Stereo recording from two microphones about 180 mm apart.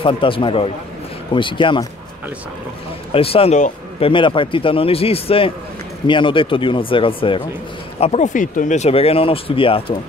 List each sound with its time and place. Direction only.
0.0 s a man's voice: 30° left (ahead or behind)
3.1 s a man's voice: 30° left (ahead or behind)
4.1 s a man's voice: 30° left (ahead or behind)